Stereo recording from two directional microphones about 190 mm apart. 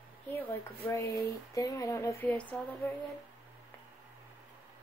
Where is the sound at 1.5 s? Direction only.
20° left (ahead or behind).